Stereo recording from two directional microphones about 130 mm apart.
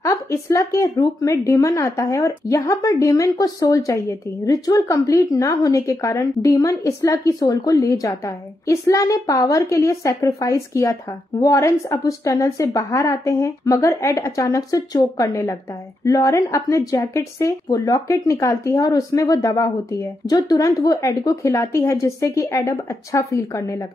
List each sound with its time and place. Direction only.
0.0 s a woman's voice: 20° left (ahead or behind)